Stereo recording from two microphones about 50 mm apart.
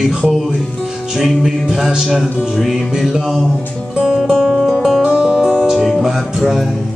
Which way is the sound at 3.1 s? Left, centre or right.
Centre.